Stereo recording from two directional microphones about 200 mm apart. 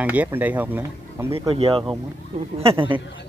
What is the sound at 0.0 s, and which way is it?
Speech, 10° right (ahead or behind).